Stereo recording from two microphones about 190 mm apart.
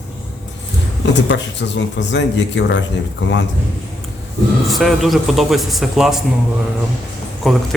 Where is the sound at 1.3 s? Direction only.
70° left (ahead or behind).